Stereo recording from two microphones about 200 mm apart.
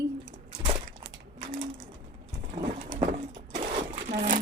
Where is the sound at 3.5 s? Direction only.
35° right (ahead or behind).